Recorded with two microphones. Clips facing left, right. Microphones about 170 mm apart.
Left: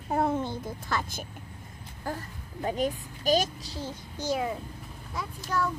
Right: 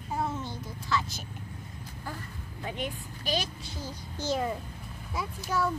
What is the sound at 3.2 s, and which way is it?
A child's voice, 45° left (ahead or behind).